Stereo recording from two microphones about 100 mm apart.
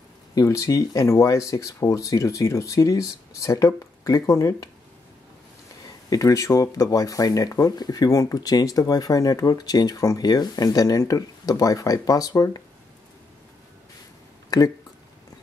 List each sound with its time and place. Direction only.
0.3 s speech: 35° left (ahead or behind)
6.0 s speech: 35° left (ahead or behind)
14.5 s speech: 40° left (ahead or behind)